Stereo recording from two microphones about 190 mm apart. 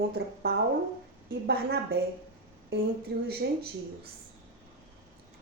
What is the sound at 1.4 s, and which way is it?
Speech, 60° right (ahead or behind).